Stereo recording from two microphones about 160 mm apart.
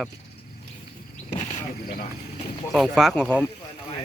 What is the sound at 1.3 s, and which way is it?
Vehicle, 45° left (ahead or behind).